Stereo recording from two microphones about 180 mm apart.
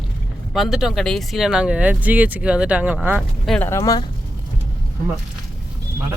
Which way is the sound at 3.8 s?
20° left (ahead or behind).